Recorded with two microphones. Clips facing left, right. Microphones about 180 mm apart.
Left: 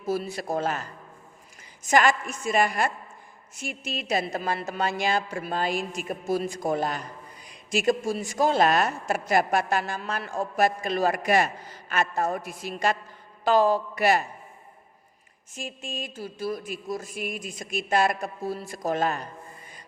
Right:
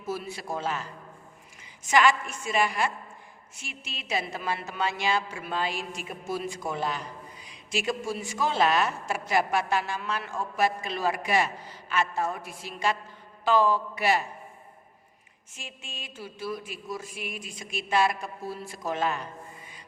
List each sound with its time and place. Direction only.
0.0 s a man's voice: 35° left (ahead or behind)
15.5 s a woman's voice: 40° left (ahead or behind)